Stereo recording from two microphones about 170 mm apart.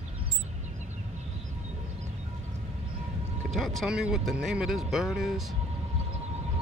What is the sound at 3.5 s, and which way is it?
Speech, centre (ahead or behind).